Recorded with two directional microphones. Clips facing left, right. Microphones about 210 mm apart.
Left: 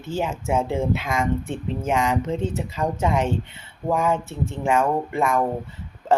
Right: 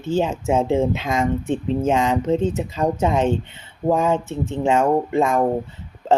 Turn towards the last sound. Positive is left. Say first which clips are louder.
# right 4 dB
turn(degrees=-20)  # may be behind; listen again after turning